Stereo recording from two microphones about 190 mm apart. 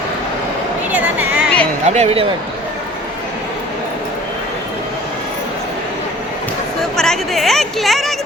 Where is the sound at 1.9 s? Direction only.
35° right (ahead or behind).